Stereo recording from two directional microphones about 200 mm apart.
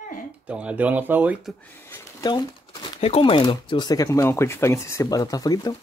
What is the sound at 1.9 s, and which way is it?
Speech, 20° left (ahead or behind).